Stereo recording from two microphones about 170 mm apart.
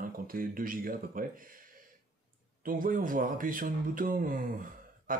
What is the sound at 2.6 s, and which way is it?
Speech, 55° right (ahead or behind).